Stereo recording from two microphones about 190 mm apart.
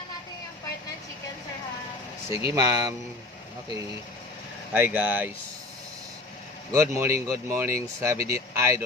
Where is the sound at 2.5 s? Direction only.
20° right (ahead or behind).